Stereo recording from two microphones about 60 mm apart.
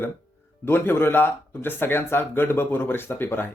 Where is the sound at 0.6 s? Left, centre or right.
Left.